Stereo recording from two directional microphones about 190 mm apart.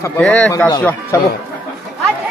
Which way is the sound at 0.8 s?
10° left (ahead or behind).